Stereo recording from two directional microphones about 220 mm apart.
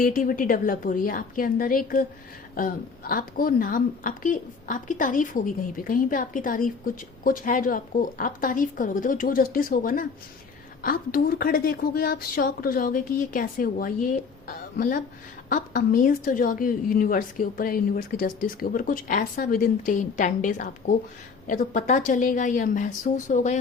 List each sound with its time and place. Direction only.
0.0 s a woman's voice: 40° left (ahead or behind)